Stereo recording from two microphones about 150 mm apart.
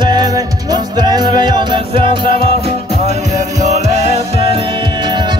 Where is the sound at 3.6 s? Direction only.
50° right (ahead or behind); by 5.4 s 30° right (ahead or behind).